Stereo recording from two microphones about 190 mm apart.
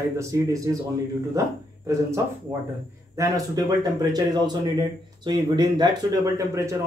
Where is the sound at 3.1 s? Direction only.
15° right (ahead or behind).